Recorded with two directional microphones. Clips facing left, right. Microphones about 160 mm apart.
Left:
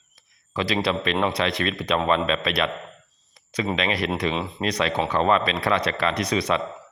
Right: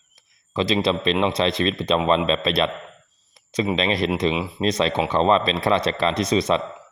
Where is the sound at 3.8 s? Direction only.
25° right (ahead or behind).